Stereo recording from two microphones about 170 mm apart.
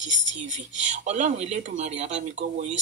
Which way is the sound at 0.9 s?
45° right (ahead or behind).